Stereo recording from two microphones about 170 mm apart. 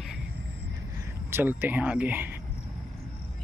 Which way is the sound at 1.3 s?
10° right (ahead or behind).